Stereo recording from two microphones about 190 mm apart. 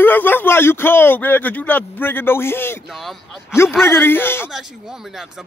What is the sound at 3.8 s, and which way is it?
Speech, 10° left (ahead or behind).